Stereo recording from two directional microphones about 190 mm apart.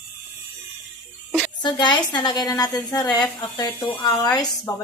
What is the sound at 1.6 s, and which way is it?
Speech, 25° left (ahead or behind).